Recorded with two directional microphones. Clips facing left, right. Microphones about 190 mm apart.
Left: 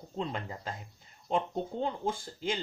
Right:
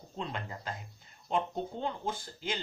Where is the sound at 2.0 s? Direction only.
30° left (ahead or behind).